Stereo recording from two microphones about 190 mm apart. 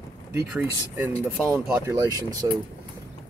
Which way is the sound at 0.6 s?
10° right (ahead or behind).